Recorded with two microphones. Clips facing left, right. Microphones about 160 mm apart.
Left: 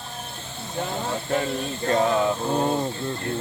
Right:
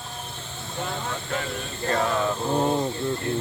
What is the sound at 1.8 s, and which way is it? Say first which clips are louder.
Speech: left 3 dB; 20° left (ahead or behind).